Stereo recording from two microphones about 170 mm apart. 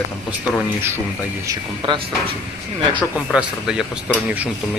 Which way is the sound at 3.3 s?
5° right (ahead or behind).